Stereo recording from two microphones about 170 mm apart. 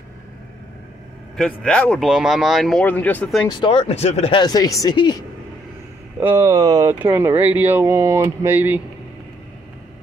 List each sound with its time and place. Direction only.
1.3 s speech: 5° left (ahead or behind)
3.4 s speech: 30° left (ahead or behind)
6.1 s speech: 15° right (ahead or behind)
6.9 s speech: 15° right (ahead or behind)